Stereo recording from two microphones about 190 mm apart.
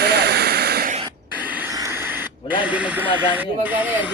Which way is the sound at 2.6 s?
5° right (ahead or behind).